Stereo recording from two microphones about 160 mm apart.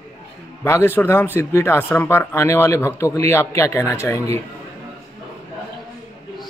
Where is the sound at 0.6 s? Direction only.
15° left (ahead or behind).